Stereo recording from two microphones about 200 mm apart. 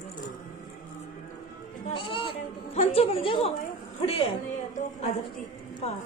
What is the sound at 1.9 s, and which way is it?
A woman's voice, 25° left (ahead or behind).